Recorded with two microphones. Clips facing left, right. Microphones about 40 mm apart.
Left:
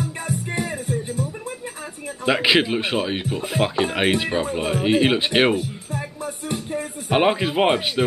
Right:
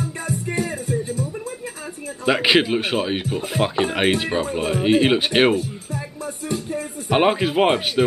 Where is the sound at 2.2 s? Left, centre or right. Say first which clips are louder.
Right 1 dB; centre.